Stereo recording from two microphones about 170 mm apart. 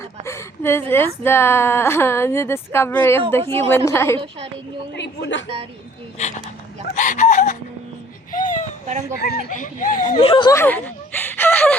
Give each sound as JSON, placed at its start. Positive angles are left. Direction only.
{"t": 0.3, "sound": "a woman's voice", "side_deg": 15}
{"t": 4.9, "sound": "a woman's voice", "side_deg": 85}
{"t": 6.1, "sound": "speech", "side_deg": 45}
{"t": 8.3, "sound": "baby cry", "side_deg": 50}
{"t": 9.2, "sound": "speech", "side_deg": 55}
{"t": 10.2, "sound": "speech", "side_deg": 30}
{"t": 10.5, "sound": "speech", "side_deg": 10}